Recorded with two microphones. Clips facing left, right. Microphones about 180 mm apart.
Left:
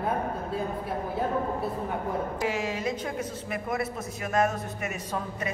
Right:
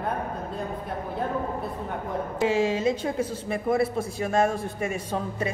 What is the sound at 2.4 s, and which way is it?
A woman's voice, 25° right (ahead or behind).